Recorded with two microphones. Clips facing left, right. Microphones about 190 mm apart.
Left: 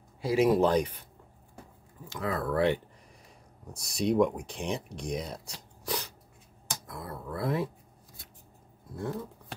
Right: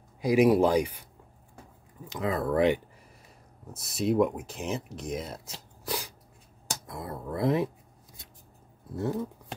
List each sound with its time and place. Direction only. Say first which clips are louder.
0.2 s speech: right 3 dB; 15° right (ahead or behind)
2.0 s speech: right 3 dB; 20° right (ahead or behind)
3.6 s speech: right 1 dB; centre (ahead or behind)
5.9 s a sound: even; 5° right (ahead or behind)
6.9 s speech: right 3 dB; 20° right (ahead or behind)
8.9 s speech: right 4 dB; 20° right (ahead or behind)